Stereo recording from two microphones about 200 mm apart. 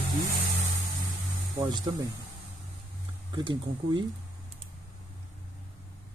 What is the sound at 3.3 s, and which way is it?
Speech, 25° right (ahead or behind).